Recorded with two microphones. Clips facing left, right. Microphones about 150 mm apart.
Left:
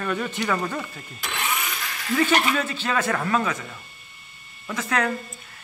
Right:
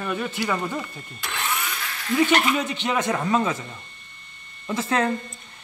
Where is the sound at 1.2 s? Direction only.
5° left (ahead or behind).